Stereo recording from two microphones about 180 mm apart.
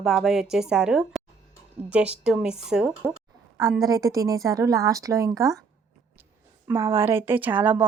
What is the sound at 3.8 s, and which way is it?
Speech, 20° right (ahead or behind).